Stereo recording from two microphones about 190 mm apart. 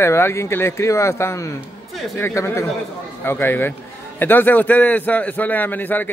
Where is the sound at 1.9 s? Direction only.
Centre (ahead or behind).